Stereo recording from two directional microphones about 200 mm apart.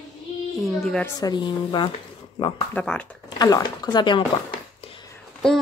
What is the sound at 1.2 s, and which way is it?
Speech, 20° left (ahead or behind).